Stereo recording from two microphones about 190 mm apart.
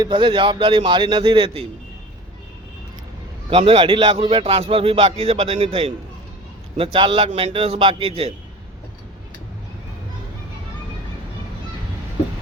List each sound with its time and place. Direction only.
0.0 s a man's voice: 25° right (ahead or behind)
3.5 s a man's voice: 30° right (ahead or behind)